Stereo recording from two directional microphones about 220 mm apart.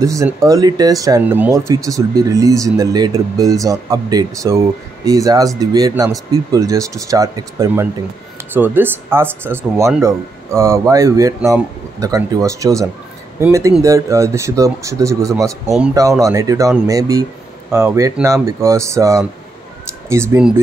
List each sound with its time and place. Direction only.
0.0 s speech: 15° right (ahead or behind)